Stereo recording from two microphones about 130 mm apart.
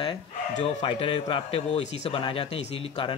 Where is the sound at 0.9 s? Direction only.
45° left (ahead or behind).